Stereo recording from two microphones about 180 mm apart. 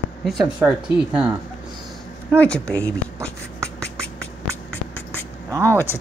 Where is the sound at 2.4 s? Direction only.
5° left (ahead or behind).